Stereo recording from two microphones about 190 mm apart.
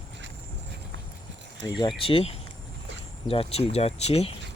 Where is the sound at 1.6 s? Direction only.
25° left (ahead or behind).